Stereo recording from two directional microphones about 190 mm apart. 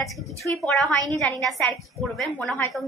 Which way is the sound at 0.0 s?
Centre (ahead or behind).